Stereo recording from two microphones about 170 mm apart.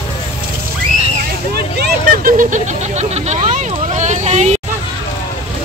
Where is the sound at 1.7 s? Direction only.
65° right (ahead or behind); by 4.6 s 40° right (ahead or behind).